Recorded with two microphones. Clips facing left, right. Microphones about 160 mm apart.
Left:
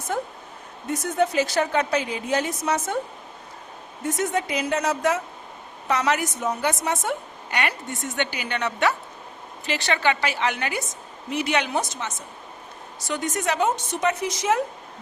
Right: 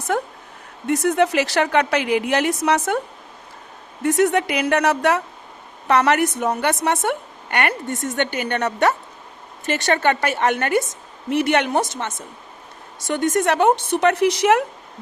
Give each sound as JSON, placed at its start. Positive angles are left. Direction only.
{"t": 0.1, "sound": "a woman's voice", "side_deg": -85}
{"t": 4.0, "sound": "a woman's voice", "side_deg": -70}